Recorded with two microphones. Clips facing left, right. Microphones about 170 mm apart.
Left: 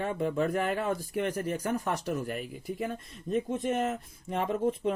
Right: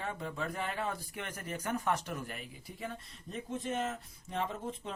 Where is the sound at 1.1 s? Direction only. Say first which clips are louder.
Left 11 dB; 40° left (ahead or behind).